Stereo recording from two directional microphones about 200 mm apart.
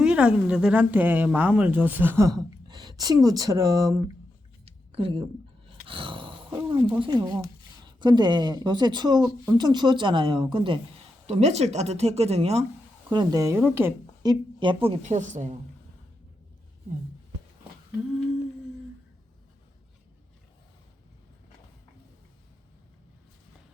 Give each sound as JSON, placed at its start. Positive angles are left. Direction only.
{"t": 0.0, "sound": "a woman's voice", "side_deg": -5}
{"t": 4.6, "sound": "a sound", "side_deg": -25}
{"t": 7.0, "sound": "speech", "side_deg": -20}
{"t": 13.1, "sound": "speech", "side_deg": -20}